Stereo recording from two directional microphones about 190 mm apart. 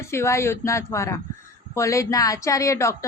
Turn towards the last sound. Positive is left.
turn(degrees=15)  # may be behind; listen again after turning